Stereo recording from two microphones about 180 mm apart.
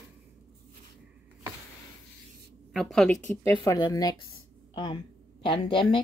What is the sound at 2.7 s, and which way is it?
A woman's voice, centre (ahead or behind).